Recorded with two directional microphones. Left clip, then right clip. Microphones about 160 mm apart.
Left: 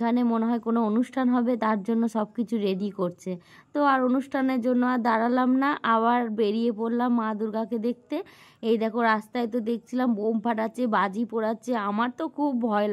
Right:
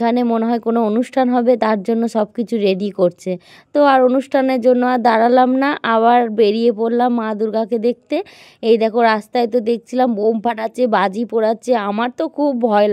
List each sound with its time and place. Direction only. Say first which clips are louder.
0.0 s speech: right 9 dB; 40° right (ahead or behind)